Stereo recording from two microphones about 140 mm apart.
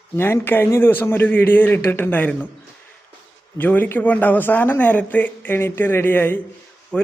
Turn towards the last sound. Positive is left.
turn(degrees=10)  # may be behind; listen again after turning